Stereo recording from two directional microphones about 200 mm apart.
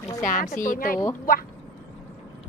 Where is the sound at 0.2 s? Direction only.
40° left (ahead or behind).